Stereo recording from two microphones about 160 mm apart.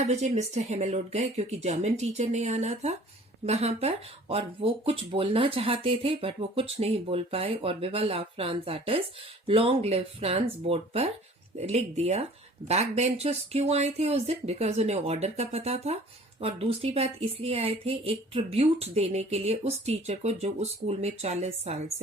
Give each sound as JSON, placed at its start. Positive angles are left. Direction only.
{"t": 0.0, "sound": "speech", "side_deg": -45}